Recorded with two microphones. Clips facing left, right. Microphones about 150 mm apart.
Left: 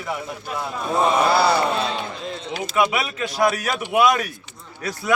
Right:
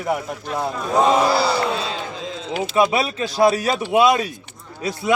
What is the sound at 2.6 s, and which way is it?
A man's voice, 30° right (ahead or behind).